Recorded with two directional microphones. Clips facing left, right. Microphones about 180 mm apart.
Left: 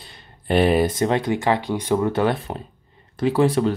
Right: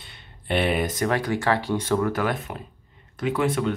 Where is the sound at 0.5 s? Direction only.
40° left (ahead or behind).